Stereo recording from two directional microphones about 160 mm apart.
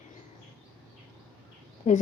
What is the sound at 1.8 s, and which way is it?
Speech, 50° left (ahead or behind).